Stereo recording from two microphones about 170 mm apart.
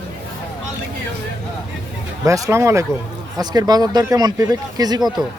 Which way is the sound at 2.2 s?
20° right (ahead or behind).